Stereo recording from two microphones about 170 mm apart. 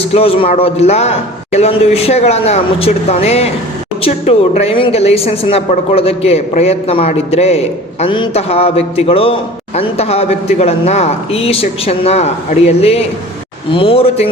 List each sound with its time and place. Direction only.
0.1 s a woman's voice: 35° left (ahead or behind)